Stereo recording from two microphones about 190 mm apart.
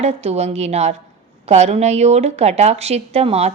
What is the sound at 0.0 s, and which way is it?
A woman's voice, 35° right (ahead or behind).